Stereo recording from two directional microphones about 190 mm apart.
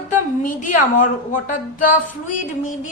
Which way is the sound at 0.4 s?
40° left (ahead or behind).